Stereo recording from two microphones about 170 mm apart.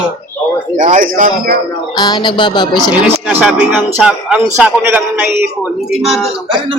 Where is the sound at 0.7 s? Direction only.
40° right (ahead or behind).